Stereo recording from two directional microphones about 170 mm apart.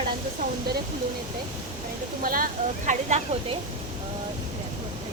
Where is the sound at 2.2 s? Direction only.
55° right (ahead or behind).